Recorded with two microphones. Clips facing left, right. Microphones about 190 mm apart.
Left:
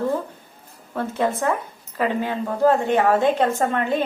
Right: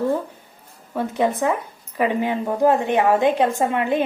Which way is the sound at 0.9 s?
15° right (ahead or behind).